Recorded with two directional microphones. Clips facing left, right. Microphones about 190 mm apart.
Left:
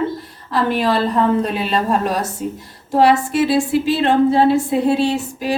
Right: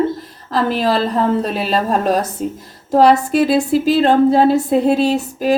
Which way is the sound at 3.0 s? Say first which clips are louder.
Right 2 dB; 40° right (ahead or behind).